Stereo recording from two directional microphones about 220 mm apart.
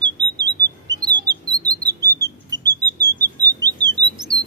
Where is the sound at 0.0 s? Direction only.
20° right (ahead or behind).